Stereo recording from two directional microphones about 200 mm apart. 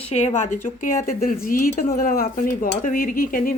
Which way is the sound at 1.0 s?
45° left (ahead or behind).